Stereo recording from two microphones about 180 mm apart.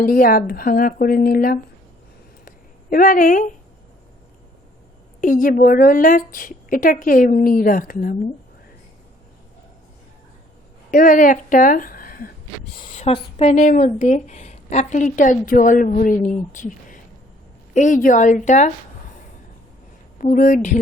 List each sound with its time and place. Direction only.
0.0 s a woman's voice: 55° left (ahead or behind)
2.9 s a woman's voice: 50° left (ahead or behind)
5.2 s a woman's voice: 50° left (ahead or behind)
10.9 s a woman's voice: 50° left (ahead or behind)
12.9 s a woman's voice: 35° left (ahead or behind)
20.1 s a woman's voice: 50° left (ahead or behind)